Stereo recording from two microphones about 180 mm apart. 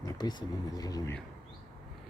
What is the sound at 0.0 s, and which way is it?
Speech, 25° left (ahead or behind).